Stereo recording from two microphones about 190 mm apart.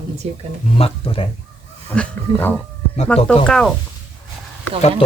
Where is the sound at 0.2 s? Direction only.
35° right (ahead or behind).